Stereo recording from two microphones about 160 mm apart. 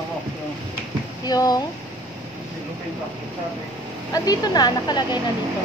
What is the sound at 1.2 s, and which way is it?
Speech, 25° left (ahead or behind).